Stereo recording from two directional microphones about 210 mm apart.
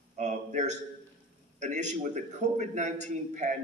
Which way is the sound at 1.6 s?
35° right (ahead or behind).